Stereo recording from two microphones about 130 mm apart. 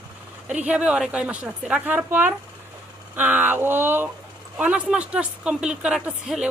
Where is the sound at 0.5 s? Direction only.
10° right (ahead or behind).